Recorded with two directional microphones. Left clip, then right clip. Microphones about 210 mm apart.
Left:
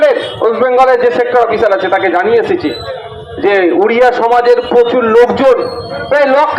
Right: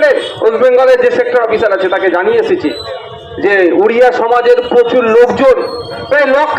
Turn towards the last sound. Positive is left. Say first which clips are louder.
# left 1 dB
turn(degrees=25)  # may be behind; listen again after turning